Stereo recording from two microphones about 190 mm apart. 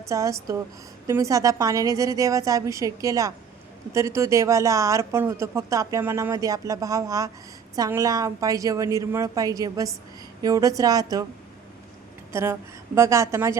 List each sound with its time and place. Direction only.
0.1 s speech: 15° right (ahead or behind)
12.3 s speech: 15° right (ahead or behind)